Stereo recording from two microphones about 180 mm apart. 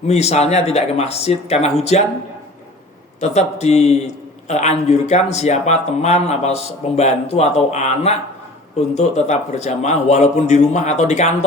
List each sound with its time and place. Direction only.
0.1 s a man's voice: 35° left (ahead or behind)
3.2 s a man's voice: 40° left (ahead or behind)